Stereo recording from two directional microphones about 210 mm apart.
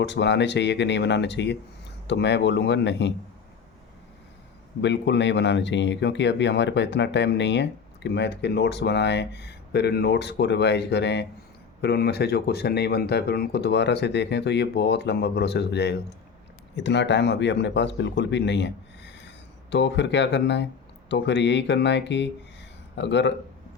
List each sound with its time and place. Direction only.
0.0 s a man's voice: 55° left (ahead or behind)
4.8 s a man's voice: 55° left (ahead or behind)